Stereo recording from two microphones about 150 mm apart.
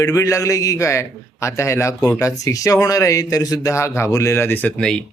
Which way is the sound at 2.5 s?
20° left (ahead or behind).